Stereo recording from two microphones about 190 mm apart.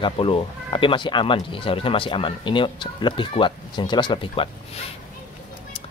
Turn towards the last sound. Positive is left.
turn(degrees=25)  # may be behind; listen again after turning